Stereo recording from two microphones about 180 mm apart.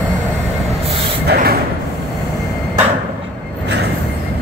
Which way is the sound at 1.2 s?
55° right (ahead or behind).